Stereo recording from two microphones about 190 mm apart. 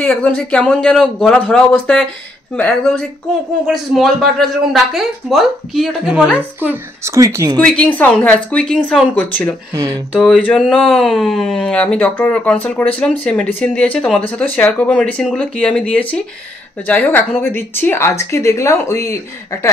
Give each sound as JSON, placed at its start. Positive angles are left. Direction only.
{"t": 0.0, "sound": "speech", "side_deg": 10}
{"t": 7.5, "sound": "speech", "side_deg": 5}
{"t": 9.8, "sound": "speech", "side_deg": -20}
{"t": 10.1, "sound": "speech", "side_deg": 0}